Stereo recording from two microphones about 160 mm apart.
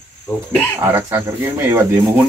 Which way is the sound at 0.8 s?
20° right (ahead or behind).